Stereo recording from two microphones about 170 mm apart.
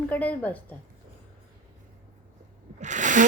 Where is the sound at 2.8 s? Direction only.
45° right (ahead or behind).